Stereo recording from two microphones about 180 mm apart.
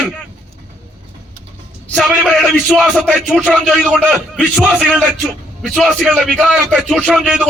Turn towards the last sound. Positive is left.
turn(degrees=0)  # may be behind; listen again after turning